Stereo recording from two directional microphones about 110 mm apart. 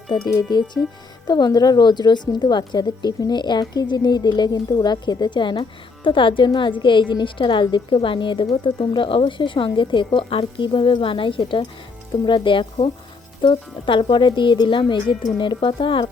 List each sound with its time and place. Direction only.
0.1 s a woman's voice: 40° left (ahead or behind)